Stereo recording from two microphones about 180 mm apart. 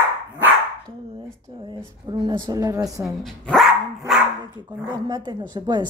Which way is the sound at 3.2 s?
Centre (ahead or behind).